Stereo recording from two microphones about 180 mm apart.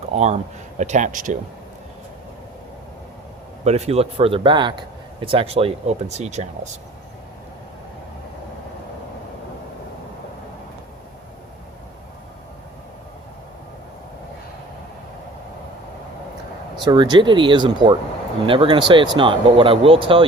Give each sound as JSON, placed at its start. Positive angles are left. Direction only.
{"t": 0.1, "sound": "speech", "side_deg": -40}
{"t": 3.6, "sound": "speech", "side_deg": -35}
{"t": 16.8, "sound": "speech", "side_deg": -25}